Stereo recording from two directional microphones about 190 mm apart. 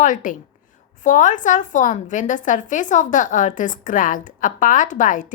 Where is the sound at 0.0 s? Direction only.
45° left (ahead or behind).